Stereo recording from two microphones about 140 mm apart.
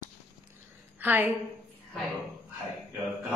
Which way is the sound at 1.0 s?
10° right (ahead or behind).